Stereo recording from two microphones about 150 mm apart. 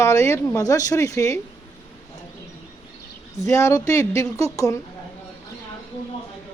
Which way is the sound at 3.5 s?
20° left (ahead or behind).